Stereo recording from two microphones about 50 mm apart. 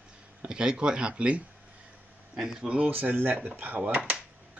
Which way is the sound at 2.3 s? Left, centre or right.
Centre.